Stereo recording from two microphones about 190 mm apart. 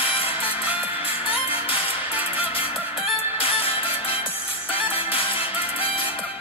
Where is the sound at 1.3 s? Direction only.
30° left (ahead or behind).